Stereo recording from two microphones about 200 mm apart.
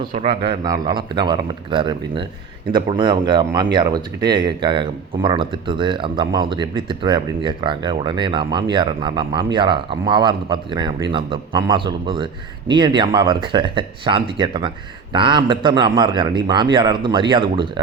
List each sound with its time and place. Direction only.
0.1 s speech: 25° right (ahead or behind)